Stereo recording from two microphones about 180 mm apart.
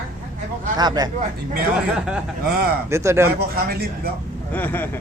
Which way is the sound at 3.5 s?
55° right (ahead or behind).